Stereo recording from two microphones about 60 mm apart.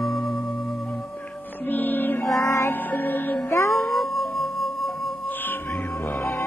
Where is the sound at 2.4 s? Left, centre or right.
Left.